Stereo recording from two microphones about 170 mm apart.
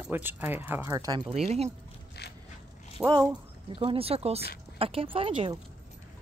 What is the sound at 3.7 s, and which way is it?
Speech, 35° right (ahead or behind).